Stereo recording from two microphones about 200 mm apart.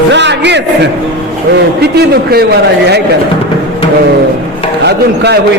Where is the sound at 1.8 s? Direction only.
50° right (ahead or behind).